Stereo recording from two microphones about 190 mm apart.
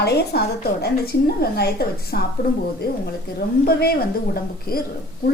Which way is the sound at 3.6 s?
50° left (ahead or behind).